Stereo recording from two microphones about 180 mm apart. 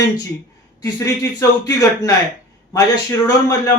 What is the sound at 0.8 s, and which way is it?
Speech, 15° left (ahead or behind).